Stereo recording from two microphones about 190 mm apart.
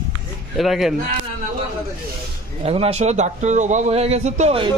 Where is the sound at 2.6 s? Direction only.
30° right (ahead or behind).